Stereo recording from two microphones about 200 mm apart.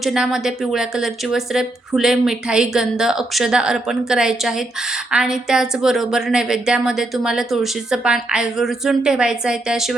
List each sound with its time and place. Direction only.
0.0 s speech: centre (ahead or behind)